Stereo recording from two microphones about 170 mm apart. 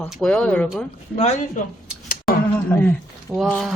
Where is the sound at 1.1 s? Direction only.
40° left (ahead or behind).